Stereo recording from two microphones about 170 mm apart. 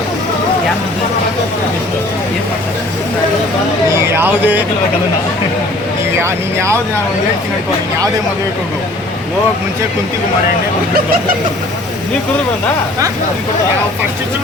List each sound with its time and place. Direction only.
4.0 s speech: 15° right (ahead or behind)
6.2 s speech: 15° right (ahead or behind)